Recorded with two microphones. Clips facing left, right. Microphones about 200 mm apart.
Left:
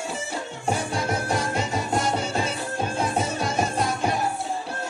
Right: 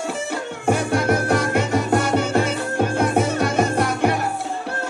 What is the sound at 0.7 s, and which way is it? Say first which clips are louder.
Music: right 7 dB; 65° right (ahead or behind).